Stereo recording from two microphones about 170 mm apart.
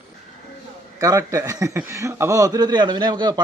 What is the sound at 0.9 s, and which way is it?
Speech, 20° right (ahead or behind).